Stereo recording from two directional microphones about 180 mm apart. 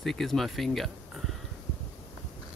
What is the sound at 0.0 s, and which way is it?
Speech, centre (ahead or behind).